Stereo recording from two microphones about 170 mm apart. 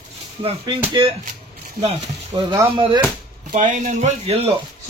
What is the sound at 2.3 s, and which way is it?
Speech, 10° right (ahead or behind).